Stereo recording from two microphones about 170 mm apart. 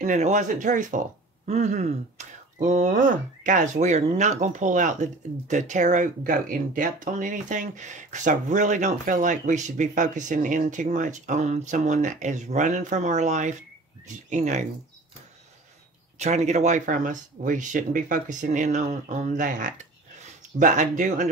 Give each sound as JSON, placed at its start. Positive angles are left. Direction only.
{"t": 0.0, "sound": "speech", "side_deg": -45}
{"t": 16.2, "sound": "speech", "side_deg": -45}